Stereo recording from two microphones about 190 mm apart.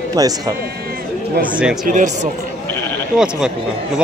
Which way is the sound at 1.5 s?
5° right (ahead or behind).